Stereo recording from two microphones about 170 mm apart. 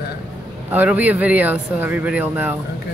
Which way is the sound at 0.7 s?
10° right (ahead or behind).